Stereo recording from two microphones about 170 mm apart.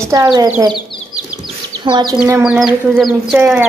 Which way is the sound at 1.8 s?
25° right (ahead or behind).